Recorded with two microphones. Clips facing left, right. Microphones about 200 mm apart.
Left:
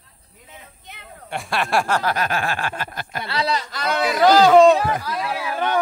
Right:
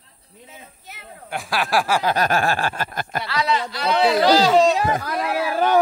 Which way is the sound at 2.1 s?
40° right (ahead or behind).